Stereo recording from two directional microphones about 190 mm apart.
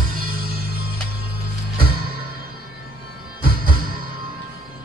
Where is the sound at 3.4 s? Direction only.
50° right (ahead or behind).